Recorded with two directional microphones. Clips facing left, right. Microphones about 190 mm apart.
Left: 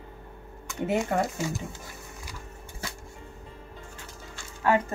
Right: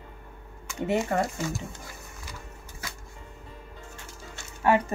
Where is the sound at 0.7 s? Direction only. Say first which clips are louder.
Even; centre (ahead or behind).